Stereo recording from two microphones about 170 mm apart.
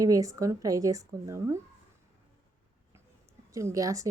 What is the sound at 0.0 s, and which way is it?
Speech, 20° right (ahead or behind).